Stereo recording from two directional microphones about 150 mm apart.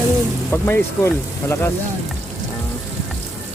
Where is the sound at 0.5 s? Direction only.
15° left (ahead or behind).